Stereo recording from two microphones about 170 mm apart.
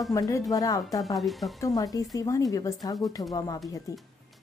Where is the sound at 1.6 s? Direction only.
20° left (ahead or behind).